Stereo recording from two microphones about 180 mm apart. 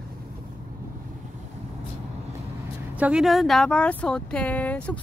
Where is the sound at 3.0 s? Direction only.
5° right (ahead or behind).